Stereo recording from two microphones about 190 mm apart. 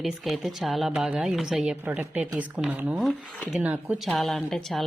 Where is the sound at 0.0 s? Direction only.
Centre (ahead or behind).